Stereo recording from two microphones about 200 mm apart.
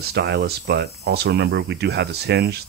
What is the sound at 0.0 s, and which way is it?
Speech, 55° right (ahead or behind).